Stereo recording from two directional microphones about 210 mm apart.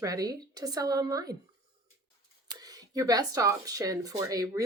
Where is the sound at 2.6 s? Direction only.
15° right (ahead or behind).